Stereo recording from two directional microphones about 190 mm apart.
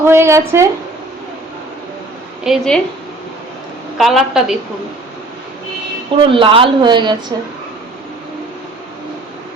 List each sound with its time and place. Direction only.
0.0 s speech: 15° right (ahead or behind)
2.4 s a woman's voice: centre (ahead or behind)
3.9 s a woman's voice: centre (ahead or behind)
6.2 s speech: 25° right (ahead or behind)